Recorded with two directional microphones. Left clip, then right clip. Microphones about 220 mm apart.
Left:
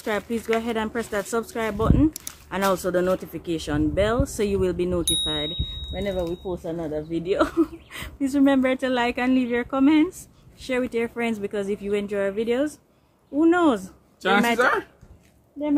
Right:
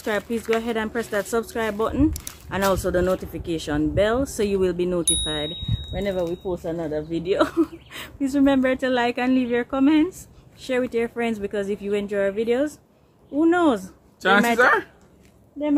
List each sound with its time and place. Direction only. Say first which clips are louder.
0.0 s speech: right 1 dB; centre (ahead or behind)
14.2 s speech: right 3 dB; 10° right (ahead or behind)